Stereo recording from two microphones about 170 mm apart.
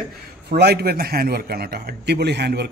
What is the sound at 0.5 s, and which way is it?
A man's voice, 70° right (ahead or behind).